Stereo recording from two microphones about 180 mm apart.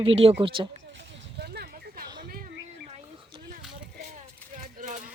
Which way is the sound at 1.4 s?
60° right (ahead or behind).